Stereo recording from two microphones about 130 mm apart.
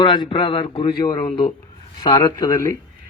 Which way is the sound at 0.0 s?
35° left (ahead or behind).